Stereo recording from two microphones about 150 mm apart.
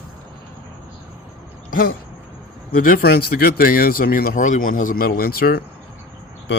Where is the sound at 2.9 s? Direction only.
90° left.